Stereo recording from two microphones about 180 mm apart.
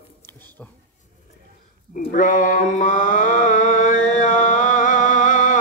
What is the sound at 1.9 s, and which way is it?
Mantra, 45° left (ahead or behind).